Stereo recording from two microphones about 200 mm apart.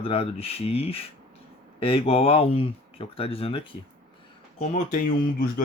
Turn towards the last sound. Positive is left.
turn(degrees=45)  # may be behind; listen again after turning